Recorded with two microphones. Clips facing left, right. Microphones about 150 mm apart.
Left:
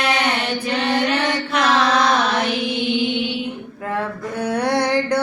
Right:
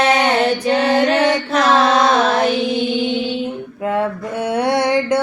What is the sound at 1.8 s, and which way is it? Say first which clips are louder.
Female singing: right 3 dB; 25° right (ahead or behind).